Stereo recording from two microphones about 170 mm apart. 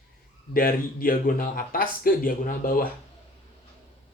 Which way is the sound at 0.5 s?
55° left (ahead or behind).